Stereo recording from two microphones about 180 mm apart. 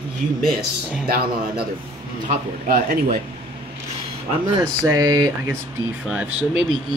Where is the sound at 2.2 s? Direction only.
45° right (ahead or behind).